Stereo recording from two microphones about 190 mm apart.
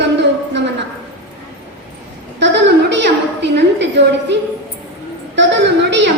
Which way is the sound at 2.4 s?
65° right (ahead or behind).